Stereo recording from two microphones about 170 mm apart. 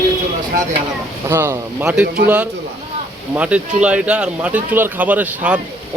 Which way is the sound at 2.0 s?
65° right (ahead or behind).